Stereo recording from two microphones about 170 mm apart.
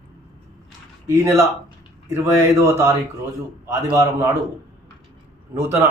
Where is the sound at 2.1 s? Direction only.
15° right (ahead or behind).